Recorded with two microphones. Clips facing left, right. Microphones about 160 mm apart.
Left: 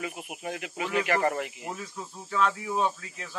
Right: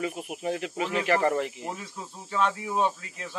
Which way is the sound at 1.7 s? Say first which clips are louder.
Even; 20° right (ahead or behind).